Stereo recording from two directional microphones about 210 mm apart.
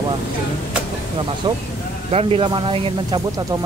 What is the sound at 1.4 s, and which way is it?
Speech, 25° right (ahead or behind).